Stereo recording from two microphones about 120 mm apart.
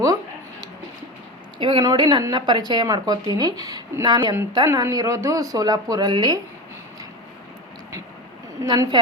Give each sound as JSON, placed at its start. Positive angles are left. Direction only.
{"t": 1.5, "sound": "speech", "side_deg": -40}
{"t": 1.8, "sound": "speech", "side_deg": -30}
{"t": 8.6, "sound": "speech", "side_deg": -35}